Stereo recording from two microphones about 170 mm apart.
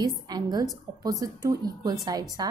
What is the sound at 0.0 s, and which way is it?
A woman's voice, 20° right (ahead or behind).